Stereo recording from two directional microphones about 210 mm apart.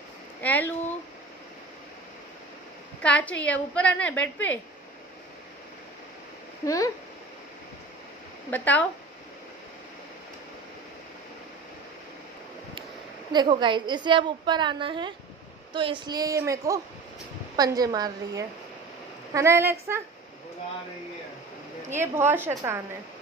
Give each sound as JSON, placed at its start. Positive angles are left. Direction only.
{"t": 0.4, "sound": "a woman's voice", "side_deg": 10}
{"t": 3.0, "sound": "a woman's voice", "side_deg": 5}
{"t": 6.6, "sound": "a woman's voice", "side_deg": 15}
{"t": 8.5, "sound": "a woman's voice", "side_deg": 10}
{"t": 13.3, "sound": "a woman's voice", "side_deg": -20}
{"t": 21.9, "sound": "a woman's voice", "side_deg": -10}